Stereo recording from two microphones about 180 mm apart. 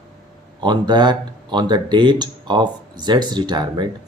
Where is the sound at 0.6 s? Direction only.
25° right (ahead or behind).